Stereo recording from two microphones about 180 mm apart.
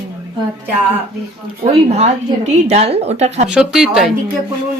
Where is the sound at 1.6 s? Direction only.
35° right (ahead or behind).